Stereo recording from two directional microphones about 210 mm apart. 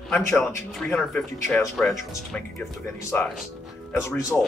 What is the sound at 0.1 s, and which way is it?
Speech, 5° left (ahead or behind).